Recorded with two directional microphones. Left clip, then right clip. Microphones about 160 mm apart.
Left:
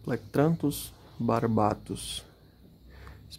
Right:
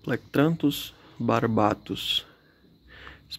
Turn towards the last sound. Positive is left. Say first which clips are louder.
# right 10 dB
turn(degrees=-20)  # may be behind; listen again after turning